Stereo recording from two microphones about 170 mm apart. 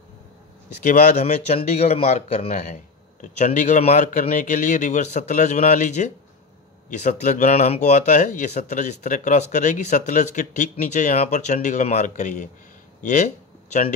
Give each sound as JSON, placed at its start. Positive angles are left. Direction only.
{"t": 0.7, "sound": "speech", "side_deg": 45}